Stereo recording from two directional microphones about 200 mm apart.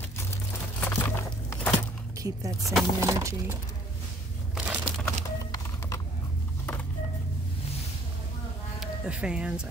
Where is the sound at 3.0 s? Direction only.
15° right (ahead or behind).